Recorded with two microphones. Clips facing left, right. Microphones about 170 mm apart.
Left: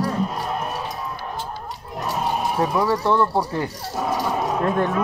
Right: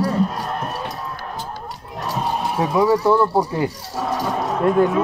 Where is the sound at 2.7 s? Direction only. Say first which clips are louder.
Right 7 dB; 10° right (ahead or behind).